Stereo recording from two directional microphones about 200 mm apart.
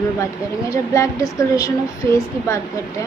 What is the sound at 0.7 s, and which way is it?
A woman's voice, 15° left (ahead or behind).